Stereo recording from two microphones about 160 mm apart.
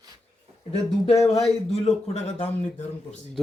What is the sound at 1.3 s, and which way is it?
A man's voice, 40° left (ahead or behind).